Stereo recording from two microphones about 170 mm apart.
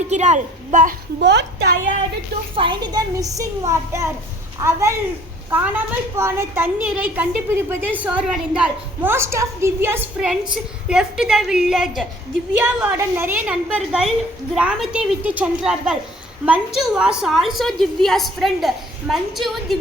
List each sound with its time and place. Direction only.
0.1 s a woman's voice: 40° right (ahead or behind)
1.2 s a woman's voice: 90° right
2.6 s a child's voice: 25° right (ahead or behind); by 19.7 s centre (ahead or behind)